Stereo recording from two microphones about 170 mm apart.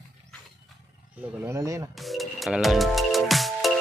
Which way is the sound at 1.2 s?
15° right (ahead or behind).